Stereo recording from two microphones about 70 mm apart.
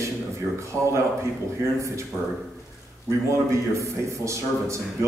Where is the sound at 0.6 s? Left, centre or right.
Right.